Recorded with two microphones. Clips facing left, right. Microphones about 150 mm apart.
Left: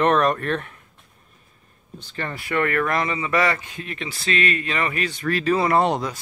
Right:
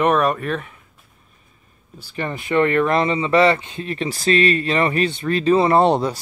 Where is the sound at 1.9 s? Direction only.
10° right (ahead or behind).